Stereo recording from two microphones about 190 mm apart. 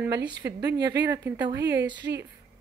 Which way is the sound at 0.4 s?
10° right (ahead or behind).